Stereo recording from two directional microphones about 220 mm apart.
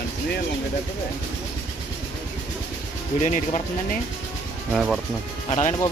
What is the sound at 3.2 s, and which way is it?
Speech, 35° left (ahead or behind).